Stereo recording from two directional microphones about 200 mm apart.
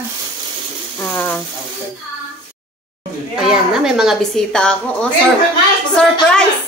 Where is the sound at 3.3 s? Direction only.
5° right (ahead or behind).